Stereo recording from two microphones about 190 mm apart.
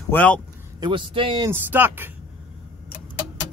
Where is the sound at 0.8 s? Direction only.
25° right (ahead or behind).